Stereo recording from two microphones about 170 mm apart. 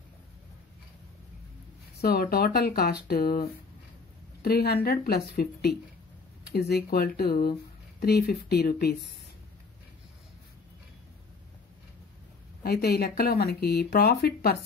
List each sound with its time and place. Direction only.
2.0 s speech: 60° left (ahead or behind)
12.6 s speech: 65° left (ahead or behind)